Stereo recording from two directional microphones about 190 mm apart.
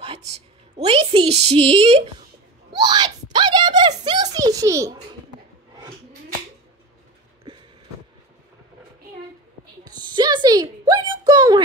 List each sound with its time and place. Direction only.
0.0 s a child's voice: 30° right (ahead or behind)
9.8 s a woman's voice: 25° right (ahead or behind)